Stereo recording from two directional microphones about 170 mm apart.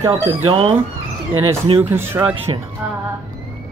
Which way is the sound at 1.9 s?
15° right (ahead or behind).